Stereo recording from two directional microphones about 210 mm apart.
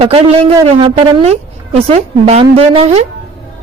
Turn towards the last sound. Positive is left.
turn(degrees=-30)  # may be behind; listen again after turning